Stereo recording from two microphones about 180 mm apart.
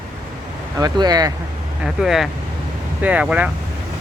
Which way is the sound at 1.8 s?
Centre (ahead or behind).